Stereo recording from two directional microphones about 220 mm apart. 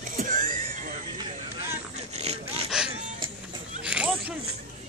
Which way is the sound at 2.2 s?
30° right (ahead or behind).